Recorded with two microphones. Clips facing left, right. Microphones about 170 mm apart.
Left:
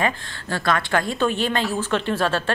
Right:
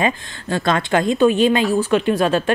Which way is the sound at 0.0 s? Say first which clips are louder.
Right 4 dB; 20° right (ahead or behind).